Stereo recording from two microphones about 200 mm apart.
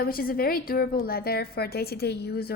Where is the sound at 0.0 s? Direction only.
45° left (ahead or behind).